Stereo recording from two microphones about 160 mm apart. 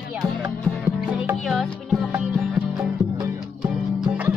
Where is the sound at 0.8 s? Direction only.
15° right (ahead or behind).